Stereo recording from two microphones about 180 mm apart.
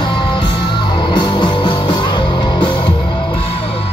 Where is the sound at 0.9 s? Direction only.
25° left (ahead or behind).